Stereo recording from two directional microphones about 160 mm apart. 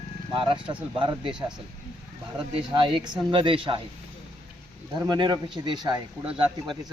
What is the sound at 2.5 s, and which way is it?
Speech, 30° right (ahead or behind).